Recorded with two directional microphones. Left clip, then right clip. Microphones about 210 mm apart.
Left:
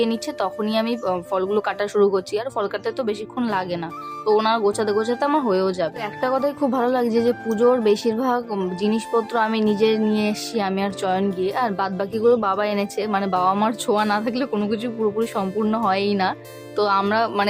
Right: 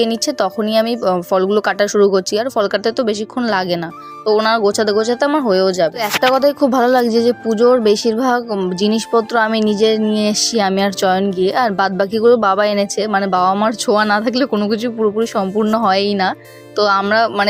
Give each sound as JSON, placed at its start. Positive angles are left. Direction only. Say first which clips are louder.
{"t": 0.0, "sound": "speech", "louder": "right 7 dB", "side_deg": -25}
{"t": 10.1, "sound": "music", "louder": "right 7 dB", "side_deg": -30}
{"t": 11.3, "sound": "speech", "louder": "right 7 dB", "side_deg": -30}